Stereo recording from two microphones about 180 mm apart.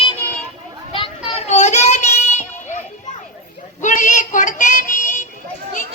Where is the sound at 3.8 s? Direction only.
45° left (ahead or behind).